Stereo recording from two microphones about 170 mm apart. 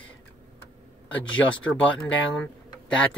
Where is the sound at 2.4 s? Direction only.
5° left (ahead or behind).